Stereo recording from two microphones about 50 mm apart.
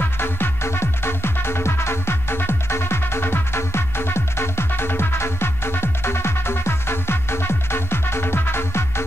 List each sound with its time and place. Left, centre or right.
0.0 s music: left